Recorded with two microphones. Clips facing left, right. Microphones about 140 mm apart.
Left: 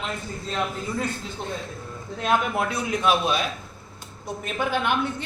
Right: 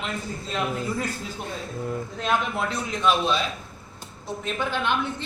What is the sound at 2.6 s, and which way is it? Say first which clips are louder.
A man's voice: left 1 dB; 10° left (ahead or behind).